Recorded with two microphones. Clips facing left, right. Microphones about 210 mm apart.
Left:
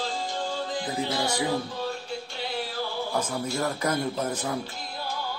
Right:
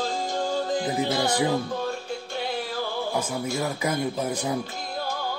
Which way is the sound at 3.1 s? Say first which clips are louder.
Even; 10° right (ahead or behind).